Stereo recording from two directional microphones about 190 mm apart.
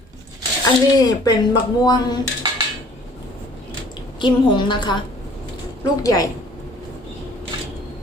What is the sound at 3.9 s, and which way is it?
A woman's voice, 25° left (ahead or behind).